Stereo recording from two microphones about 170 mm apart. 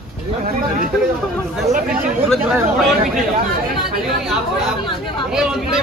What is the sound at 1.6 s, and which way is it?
Speech, 55° right (ahead or behind).